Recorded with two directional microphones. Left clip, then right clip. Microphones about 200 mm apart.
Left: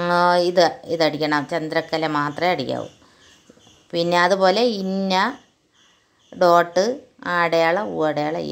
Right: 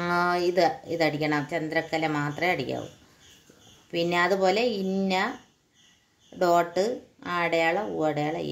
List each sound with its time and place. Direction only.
0.0 s a woman's voice: 20° left (ahead or behind)
3.9 s a woman's voice: 20° left (ahead or behind)
6.3 s a woman's voice: 20° left (ahead or behind)